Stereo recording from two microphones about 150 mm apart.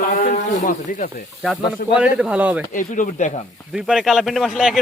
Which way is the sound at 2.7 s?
60° left (ahead or behind).